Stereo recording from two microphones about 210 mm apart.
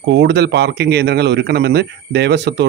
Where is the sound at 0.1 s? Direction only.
55° right (ahead or behind).